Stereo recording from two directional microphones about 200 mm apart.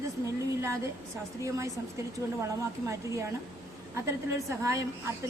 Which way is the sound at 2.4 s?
15° right (ahead or behind).